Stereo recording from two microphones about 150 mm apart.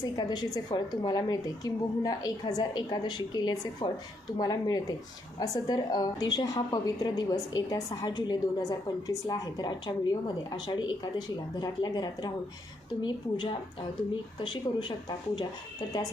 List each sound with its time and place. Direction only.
0.0 s a woman's voice: 25° left (ahead or behind)